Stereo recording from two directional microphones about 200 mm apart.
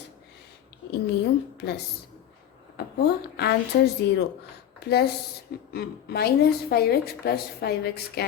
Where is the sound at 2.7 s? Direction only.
55° left (ahead or behind).